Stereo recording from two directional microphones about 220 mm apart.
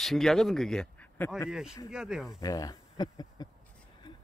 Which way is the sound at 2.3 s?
15° left (ahead or behind).